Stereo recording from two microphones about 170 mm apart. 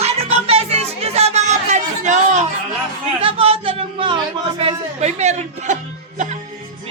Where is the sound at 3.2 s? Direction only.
35° right (ahead or behind).